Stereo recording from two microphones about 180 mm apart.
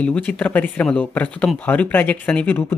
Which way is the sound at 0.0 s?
10° left (ahead or behind).